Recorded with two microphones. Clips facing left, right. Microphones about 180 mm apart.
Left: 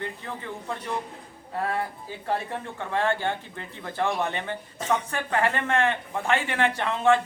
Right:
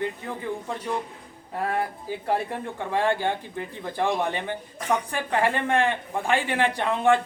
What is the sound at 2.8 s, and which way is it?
Speech, 15° right (ahead or behind).